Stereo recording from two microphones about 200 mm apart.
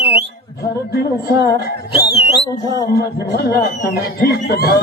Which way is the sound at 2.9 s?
50° left (ahead or behind).